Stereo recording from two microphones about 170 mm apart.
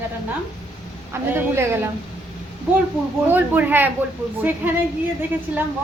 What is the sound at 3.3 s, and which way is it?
A woman's voice, 10° right (ahead or behind).